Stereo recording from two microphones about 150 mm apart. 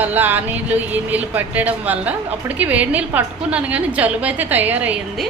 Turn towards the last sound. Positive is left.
turn(degrees=-10)  # may be behind; listen again after turning